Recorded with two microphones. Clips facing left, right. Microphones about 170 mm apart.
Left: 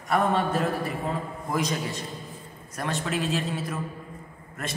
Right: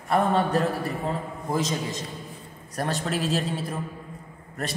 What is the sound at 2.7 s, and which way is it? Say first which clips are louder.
A woman's voice: right 2 dB; 40° right (ahead or behind).